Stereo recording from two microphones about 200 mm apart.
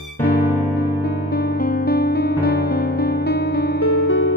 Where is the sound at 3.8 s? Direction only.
85° left.